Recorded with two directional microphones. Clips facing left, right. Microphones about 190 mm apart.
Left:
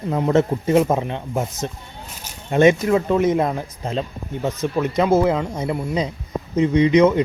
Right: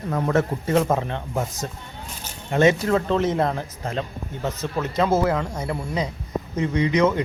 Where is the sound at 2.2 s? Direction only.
15° left (ahead or behind).